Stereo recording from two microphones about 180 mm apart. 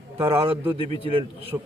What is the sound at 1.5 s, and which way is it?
Speech, 20° right (ahead or behind).